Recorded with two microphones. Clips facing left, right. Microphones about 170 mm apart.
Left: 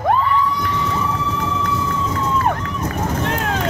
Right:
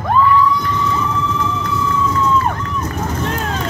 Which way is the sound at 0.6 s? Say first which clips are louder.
Right 2 dB; 65° left (ahead or behind).